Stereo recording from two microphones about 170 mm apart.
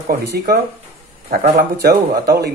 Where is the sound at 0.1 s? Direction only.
65° right (ahead or behind).